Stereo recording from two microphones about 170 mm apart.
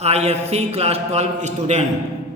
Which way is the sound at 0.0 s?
40° right (ahead or behind).